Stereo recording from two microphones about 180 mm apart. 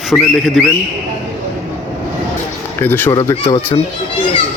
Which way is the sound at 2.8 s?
10° left (ahead or behind).